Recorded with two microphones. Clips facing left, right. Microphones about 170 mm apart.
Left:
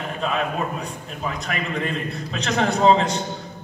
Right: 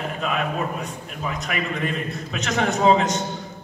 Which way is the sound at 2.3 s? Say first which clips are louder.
Left 1 dB; 35° left (ahead or behind).